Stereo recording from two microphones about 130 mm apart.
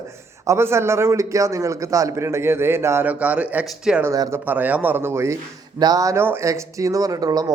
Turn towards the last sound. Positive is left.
turn(degrees=-30)  # may be behind; listen again after turning